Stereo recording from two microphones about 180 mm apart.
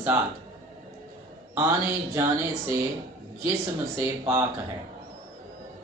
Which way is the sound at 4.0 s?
15° right (ahead or behind).